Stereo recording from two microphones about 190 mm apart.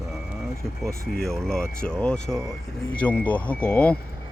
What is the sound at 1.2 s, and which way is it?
Speech, 5° left (ahead or behind).